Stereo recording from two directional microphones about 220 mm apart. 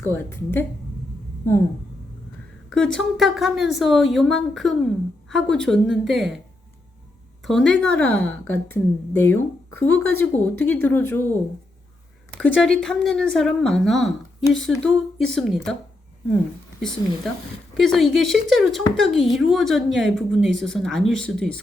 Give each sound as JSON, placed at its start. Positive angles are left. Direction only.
{"t": 0.0, "sound": "a woman's voice", "side_deg": 10}
{"t": 2.6, "sound": "speech", "side_deg": 5}
{"t": 7.4, "sound": "a woman's voice", "side_deg": 0}
{"t": 12.3, "sound": "speech", "side_deg": 5}
{"t": 17.7, "sound": "speech", "side_deg": 0}